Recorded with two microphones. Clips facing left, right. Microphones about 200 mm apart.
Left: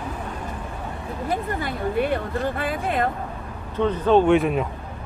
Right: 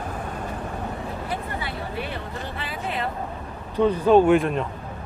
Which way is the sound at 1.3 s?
45° left (ahead or behind).